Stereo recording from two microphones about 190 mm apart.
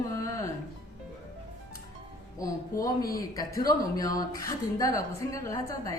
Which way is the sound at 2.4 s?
20° left (ahead or behind).